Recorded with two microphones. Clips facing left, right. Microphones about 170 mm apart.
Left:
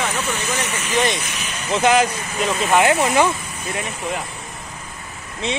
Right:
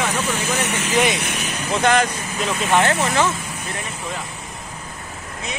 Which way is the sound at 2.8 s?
15° left (ahead or behind).